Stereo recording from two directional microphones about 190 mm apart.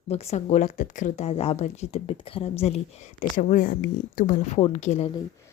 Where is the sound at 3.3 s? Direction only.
45° left (ahead or behind).